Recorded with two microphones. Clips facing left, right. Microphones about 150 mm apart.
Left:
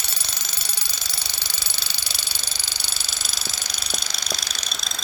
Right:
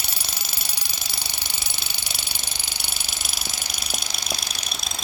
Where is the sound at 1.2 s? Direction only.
55° right (ahead or behind).